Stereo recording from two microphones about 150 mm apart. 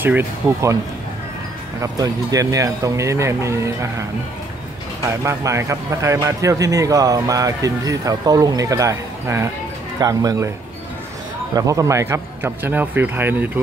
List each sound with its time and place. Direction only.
0.0 s a man's voice: 15° right (ahead or behind)
1.8 s speech: 20° right (ahead or behind)
5.2 s speech: 20° right (ahead or behind)
11.5 s a man's voice: 20° right (ahead or behind)